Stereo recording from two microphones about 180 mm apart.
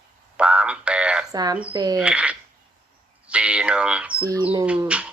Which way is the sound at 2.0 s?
5° right (ahead or behind).